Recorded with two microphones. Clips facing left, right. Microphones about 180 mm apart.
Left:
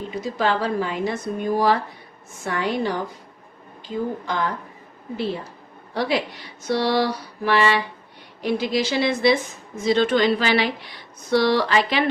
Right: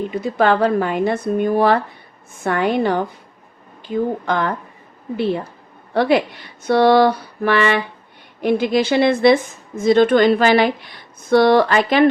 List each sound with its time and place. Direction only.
0.2 s a woman's voice: 60° right (ahead or behind)